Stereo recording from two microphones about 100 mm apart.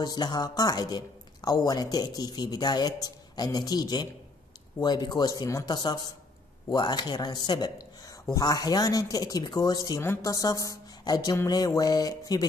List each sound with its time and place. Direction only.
0.0 s a woman's voice: 45° left (ahead or behind)
11.4 s music: 40° left (ahead or behind)